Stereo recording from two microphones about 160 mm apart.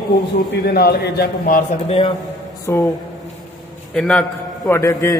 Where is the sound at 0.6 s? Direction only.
80° left.